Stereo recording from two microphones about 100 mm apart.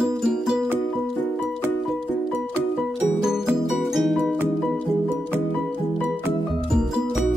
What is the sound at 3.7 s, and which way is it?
Music, centre (ahead or behind).